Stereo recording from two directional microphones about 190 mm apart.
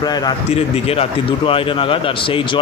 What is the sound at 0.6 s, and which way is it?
Speech, 30° left (ahead or behind).